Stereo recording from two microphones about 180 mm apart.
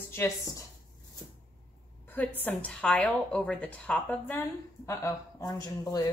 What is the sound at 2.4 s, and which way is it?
A woman's voice, 10° left (ahead or behind).